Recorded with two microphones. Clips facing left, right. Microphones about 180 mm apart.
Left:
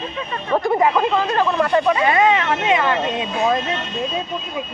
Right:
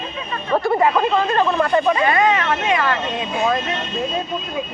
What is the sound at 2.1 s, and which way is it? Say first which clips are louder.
Speech: left 1 dB; 20° left (ahead or behind).